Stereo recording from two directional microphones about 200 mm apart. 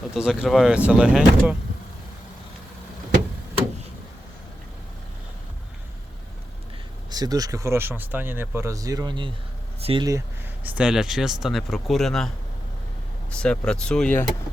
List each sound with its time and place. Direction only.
0.1 s speech: 5° right (ahead or behind)
7.1 s speech: 20° right (ahead or behind); by 12.3 s centre (ahead or behind)
13.3 s speech: 5° left (ahead or behind)